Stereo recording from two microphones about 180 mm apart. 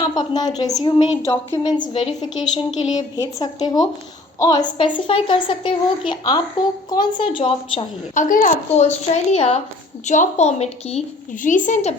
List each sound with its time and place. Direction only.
0.0 s a woman's voice: 25° left (ahead or behind)
1.8 s a woman's voice: 30° left (ahead or behind)
8.1 s speech: 45° left (ahead or behind)